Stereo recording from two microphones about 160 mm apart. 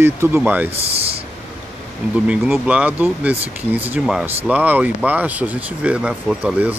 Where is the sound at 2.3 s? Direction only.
5° right (ahead or behind).